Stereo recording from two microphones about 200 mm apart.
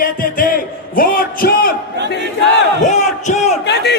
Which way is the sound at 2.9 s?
35° left (ahead or behind).